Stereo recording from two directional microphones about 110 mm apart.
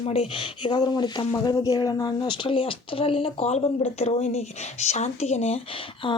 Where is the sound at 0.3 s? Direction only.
45° left (ahead or behind); by 5.5 s 85° left.